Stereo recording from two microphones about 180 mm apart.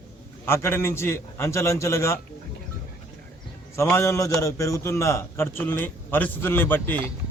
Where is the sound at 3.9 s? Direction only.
15° left (ahead or behind).